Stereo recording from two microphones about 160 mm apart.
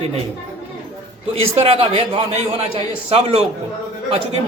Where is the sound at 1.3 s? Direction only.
35° right (ahead or behind).